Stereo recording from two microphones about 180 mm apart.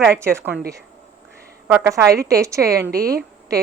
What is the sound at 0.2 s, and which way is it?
Speech, 15° right (ahead or behind).